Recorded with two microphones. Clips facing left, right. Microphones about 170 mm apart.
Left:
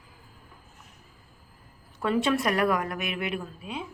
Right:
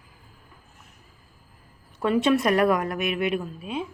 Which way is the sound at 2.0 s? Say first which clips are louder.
Right 4 dB; 20° right (ahead or behind).